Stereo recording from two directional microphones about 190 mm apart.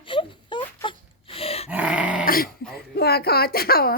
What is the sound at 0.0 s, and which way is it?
Wail, 25° left (ahead or behind).